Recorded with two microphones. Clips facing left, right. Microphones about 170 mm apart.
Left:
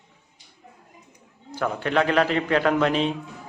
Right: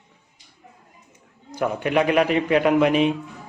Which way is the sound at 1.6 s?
10° right (ahead or behind).